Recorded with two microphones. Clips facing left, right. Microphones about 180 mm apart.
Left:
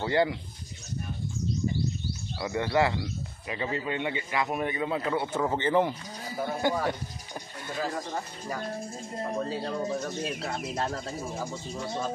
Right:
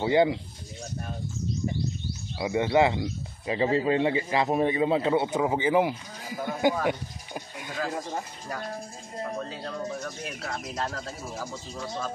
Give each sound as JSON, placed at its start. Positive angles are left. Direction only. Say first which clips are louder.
{"t": 0.0, "sound": "speech", "louder": "right 4 dB", "side_deg": -20}
{"t": 2.4, "sound": "speech", "louder": "right 4 dB", "side_deg": -20}
{"t": 5.4, "sound": "speech", "louder": "left 1 dB", "side_deg": -10}
{"t": 9.7, "sound": "speech", "louder": "left 3 dB", "side_deg": 30}